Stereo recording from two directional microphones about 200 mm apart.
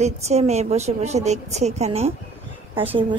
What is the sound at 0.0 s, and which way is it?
A woman's voice, 35° right (ahead or behind).